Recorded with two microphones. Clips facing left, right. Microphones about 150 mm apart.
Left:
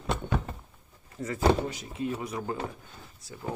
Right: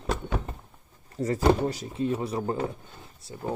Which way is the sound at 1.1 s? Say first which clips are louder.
Right 2 dB; 35° right (ahead or behind).